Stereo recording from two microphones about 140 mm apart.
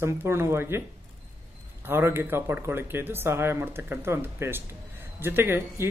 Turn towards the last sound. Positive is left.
turn(degrees=-15)  # may be behind; listen again after turning